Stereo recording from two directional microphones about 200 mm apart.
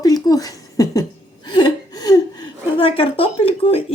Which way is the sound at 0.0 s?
20° left (ahead or behind).